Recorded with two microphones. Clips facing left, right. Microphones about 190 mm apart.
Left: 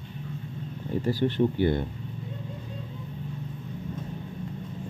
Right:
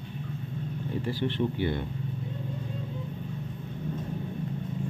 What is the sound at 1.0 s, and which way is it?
Speech, 40° left (ahead or behind).